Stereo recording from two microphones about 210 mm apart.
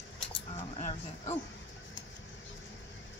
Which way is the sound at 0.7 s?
35° left (ahead or behind).